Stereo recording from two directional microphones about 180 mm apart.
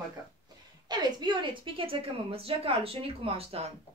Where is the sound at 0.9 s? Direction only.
25° right (ahead or behind).